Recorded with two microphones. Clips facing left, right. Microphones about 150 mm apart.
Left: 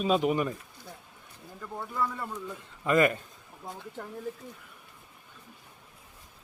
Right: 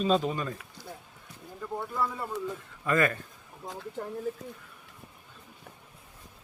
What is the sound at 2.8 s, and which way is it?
Speech, 20° left (ahead or behind).